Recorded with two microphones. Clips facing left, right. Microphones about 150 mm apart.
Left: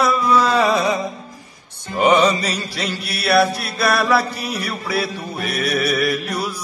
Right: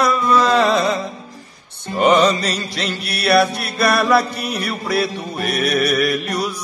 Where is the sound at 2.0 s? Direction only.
10° left (ahead or behind).